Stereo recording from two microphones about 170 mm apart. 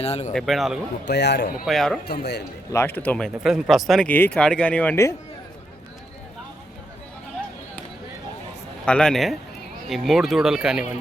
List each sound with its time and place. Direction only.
0.0 s speech: 40° left (ahead or behind)
0.3 s speech: centre (ahead or behind)
1.0 s a man's voice: 80° left
1.6 s speech: centre (ahead or behind)
2.0 s speech: 70° left (ahead or behind)
2.7 s speech: 10° left (ahead or behind)
8.8 s speech: 5° left (ahead or behind)